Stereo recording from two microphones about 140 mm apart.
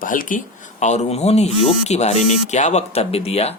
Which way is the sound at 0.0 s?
75° left (ahead or behind).